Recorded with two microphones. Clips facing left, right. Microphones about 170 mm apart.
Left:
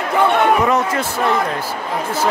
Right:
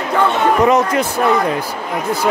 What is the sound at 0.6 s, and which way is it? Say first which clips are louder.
Speech: right 4 dB; 20° right (ahead or behind).